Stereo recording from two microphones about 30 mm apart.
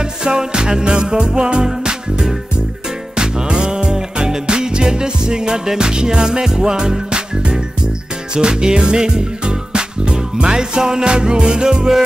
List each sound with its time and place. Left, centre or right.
0.2 s music: right